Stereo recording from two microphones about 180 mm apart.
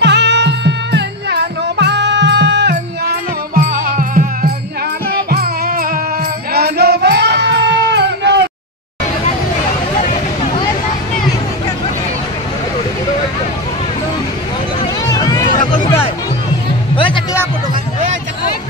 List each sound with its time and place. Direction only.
0.0 s music: 75° right (ahead or behind)
2.7 s music: 50° right (ahead or behind); by 8.5 s 70° right (ahead or behind)
15.1 s music: 20° left (ahead or behind)
16.9 s music: 30° left (ahead or behind)